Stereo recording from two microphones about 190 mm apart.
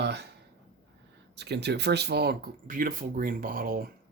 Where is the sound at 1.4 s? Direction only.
60° right (ahead or behind).